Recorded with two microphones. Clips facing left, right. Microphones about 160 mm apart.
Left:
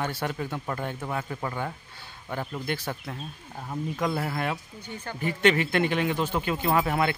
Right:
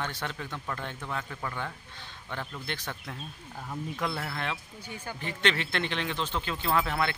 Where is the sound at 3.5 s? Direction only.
20° left (ahead or behind).